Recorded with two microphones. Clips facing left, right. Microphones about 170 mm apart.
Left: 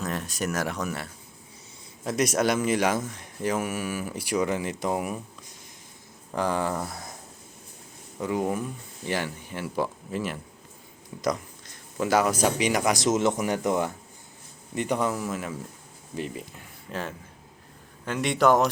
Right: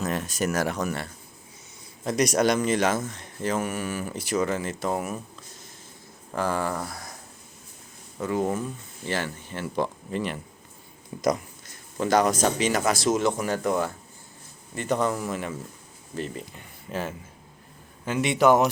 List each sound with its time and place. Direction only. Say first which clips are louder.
0.0 s speech: right 3 dB; centre (ahead or behind); by 7.1 s 20° left (ahead or behind)
8.2 s speech: right 1 dB; 15° left (ahead or behind)
11.9 s speech: right 1 dB; 5° left (ahead or behind)
16.1 s speech: even; 10° left (ahead or behind)
16.6 s speech: right 5 dB; 5° right (ahead or behind)